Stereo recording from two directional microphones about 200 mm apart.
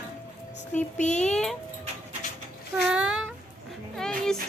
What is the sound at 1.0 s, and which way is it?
Speech, 35° left (ahead or behind).